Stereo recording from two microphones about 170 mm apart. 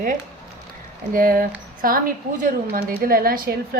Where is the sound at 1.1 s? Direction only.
55° right (ahead or behind).